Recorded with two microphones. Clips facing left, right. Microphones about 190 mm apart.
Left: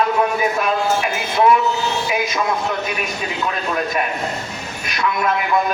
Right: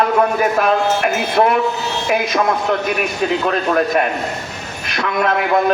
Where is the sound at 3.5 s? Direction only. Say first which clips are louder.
Right 6 dB; 50° right (ahead or behind).